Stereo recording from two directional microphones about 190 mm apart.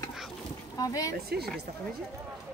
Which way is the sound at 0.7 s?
20° left (ahead or behind).